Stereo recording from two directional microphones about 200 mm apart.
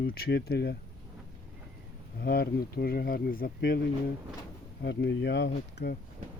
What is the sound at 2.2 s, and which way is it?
Speech, 50° left (ahead or behind).